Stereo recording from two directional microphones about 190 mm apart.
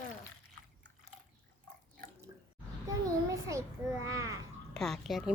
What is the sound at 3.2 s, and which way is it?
A child's voice, 15° right (ahead or behind).